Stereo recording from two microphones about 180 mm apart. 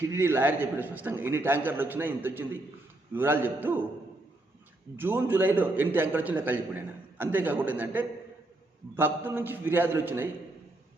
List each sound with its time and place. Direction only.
0.0 s a man's voice: 15° right (ahead or behind)
4.9 s a man's voice: 10° right (ahead or behind)